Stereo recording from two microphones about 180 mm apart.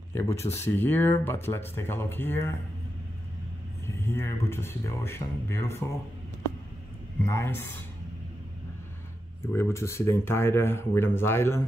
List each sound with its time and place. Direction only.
0.1 s speech: 15° left (ahead or behind)
3.8 s speech: 15° left (ahead or behind)
7.2 s speech: 15° left (ahead or behind)
9.5 s speech: 15° left (ahead or behind)